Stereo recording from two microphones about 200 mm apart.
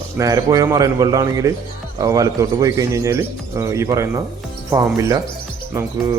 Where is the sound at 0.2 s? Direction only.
15° right (ahead or behind).